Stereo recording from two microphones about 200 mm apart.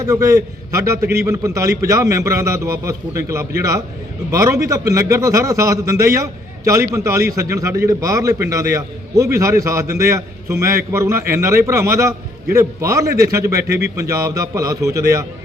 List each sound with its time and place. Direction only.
0.0 s a man's voice: 15° right (ahead or behind)